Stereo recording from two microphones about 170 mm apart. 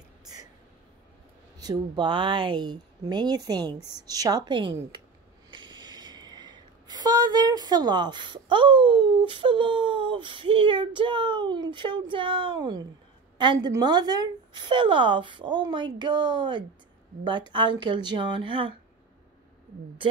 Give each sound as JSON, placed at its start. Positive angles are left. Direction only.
{"t": 1.6, "sound": "a woman's voice", "side_deg": -25}